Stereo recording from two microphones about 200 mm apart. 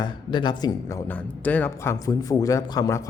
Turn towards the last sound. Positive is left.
turn(degrees=15)  # may be behind; listen again after turning